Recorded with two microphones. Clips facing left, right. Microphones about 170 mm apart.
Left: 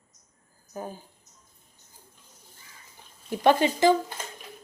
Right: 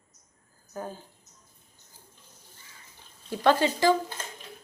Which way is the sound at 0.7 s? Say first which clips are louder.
Even; 15° left (ahead or behind).